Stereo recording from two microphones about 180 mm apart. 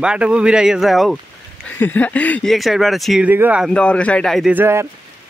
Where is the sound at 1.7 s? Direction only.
10° left (ahead or behind); by 3.7 s 10° right (ahead or behind).